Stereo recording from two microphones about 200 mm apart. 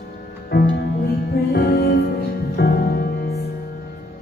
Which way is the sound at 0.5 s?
50° left (ahead or behind).